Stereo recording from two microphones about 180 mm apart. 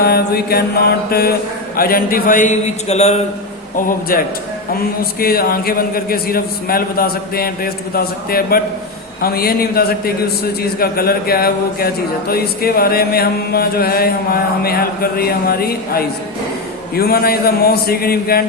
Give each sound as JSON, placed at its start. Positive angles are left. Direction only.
{"t": 0.0, "sound": "a man's voice", "side_deg": 60}
{"t": 3.8, "sound": "a man's voice", "side_deg": 50}